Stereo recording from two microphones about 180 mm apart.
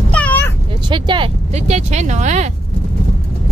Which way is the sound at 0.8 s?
25° right (ahead or behind).